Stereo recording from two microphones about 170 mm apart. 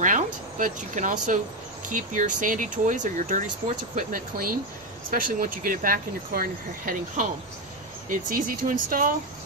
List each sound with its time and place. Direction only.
0.0 s speech: 50° right (ahead or behind)